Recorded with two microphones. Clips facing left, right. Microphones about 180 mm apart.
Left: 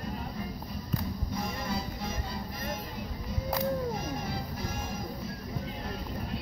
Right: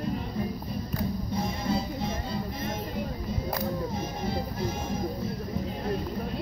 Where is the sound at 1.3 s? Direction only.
25° right (ahead or behind).